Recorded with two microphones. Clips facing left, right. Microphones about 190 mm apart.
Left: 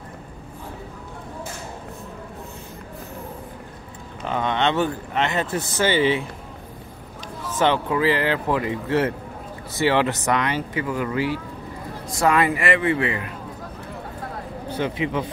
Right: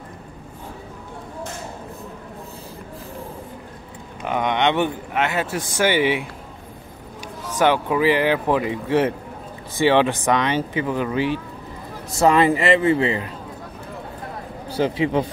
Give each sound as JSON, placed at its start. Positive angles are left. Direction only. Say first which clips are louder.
{"t": 4.2, "sound": "speech", "louder": "right 2 dB", "side_deg": -15}
{"t": 7.4, "sound": "speech", "louder": "right 2 dB", "side_deg": -10}
{"t": 14.7, "sound": "speech", "louder": "right 4 dB", "side_deg": -35}